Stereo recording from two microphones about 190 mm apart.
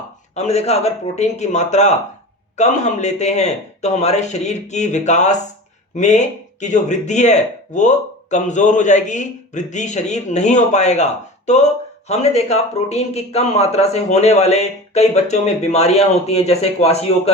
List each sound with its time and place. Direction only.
0.3 s speech: 35° left (ahead or behind)